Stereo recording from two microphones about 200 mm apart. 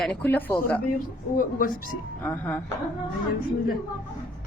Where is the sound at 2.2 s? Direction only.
10° left (ahead or behind).